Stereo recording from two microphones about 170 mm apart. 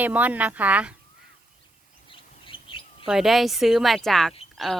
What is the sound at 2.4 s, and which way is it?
Bird, 30° left (ahead or behind).